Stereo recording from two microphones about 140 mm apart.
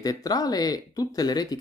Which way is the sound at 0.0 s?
25° left (ahead or behind).